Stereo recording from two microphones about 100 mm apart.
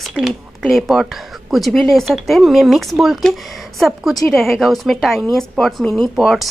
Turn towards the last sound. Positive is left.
turn(degrees=0)  # may be behind; listen again after turning